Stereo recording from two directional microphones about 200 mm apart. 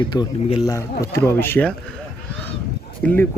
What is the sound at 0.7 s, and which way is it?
Speech, 15° left (ahead or behind).